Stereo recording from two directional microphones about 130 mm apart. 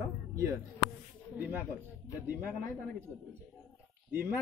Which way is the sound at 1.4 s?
15° right (ahead or behind).